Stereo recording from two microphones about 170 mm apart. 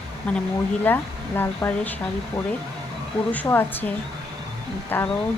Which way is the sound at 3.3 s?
10° left (ahead or behind).